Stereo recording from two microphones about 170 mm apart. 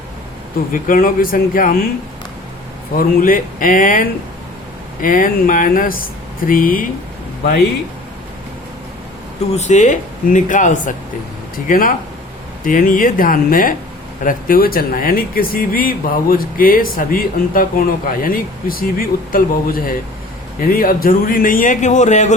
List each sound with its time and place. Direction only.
0.7 s speech: 55° left (ahead or behind)
3.2 s speech: 55° left (ahead or behind)
9.6 s speech: 45° left (ahead or behind)